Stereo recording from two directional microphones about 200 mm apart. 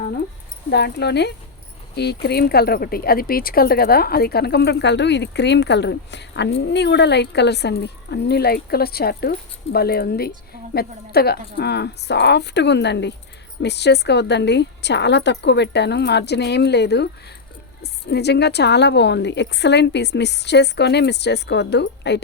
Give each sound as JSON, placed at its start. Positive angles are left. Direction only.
{"t": 0.7, "sound": "a woman's voice", "side_deg": 55}